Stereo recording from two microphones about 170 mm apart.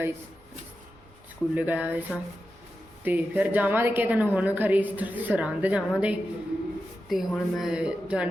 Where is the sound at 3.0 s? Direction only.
10° right (ahead or behind).